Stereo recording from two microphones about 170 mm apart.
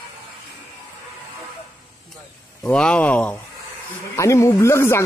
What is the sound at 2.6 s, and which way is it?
Speech, 5° left (ahead or behind).